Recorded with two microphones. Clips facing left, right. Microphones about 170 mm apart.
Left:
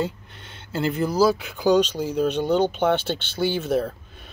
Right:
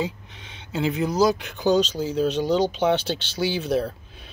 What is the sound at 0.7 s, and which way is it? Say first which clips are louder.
Speech: even; centre (ahead or behind).